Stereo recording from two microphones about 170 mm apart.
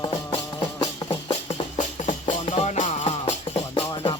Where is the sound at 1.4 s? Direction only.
45° left (ahead or behind).